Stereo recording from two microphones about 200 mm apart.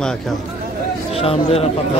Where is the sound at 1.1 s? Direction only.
30° left (ahead or behind).